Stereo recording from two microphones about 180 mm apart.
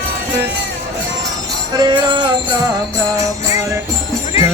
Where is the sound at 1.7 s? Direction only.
20° right (ahead or behind).